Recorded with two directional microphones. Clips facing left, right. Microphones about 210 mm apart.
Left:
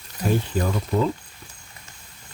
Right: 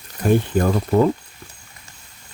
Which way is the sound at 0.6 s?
55° right (ahead or behind).